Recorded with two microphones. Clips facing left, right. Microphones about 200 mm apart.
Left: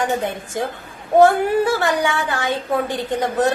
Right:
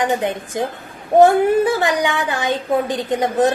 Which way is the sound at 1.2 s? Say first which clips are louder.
Right 2 dB; 15° right (ahead or behind).